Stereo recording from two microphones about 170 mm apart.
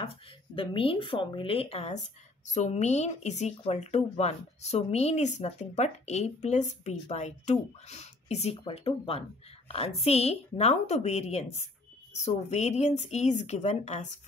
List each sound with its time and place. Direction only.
0.6 s speech: 30° left (ahead or behind)